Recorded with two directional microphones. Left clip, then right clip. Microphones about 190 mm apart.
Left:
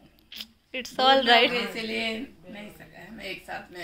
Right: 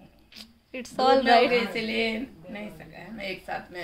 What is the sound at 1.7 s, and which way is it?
Speech, 30° right (ahead or behind).